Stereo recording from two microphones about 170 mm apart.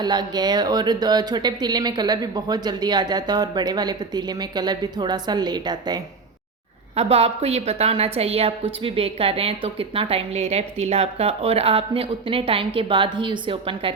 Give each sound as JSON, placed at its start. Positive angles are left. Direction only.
{"t": 0.0, "sound": "speech", "side_deg": -25}
{"t": 6.9, "sound": "a woman's voice", "side_deg": -40}